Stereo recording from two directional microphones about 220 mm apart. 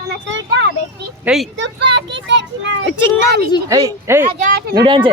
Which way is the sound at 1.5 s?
55° right (ahead or behind).